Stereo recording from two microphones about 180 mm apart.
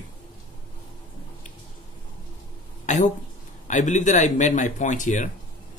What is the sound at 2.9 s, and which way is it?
Speech, 40° left (ahead or behind).